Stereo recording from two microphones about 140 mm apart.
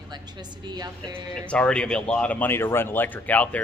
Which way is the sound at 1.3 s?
5° left (ahead or behind).